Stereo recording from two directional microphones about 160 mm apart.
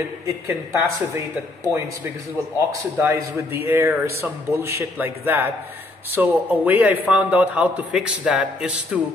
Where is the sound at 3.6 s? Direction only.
15° right (ahead or behind).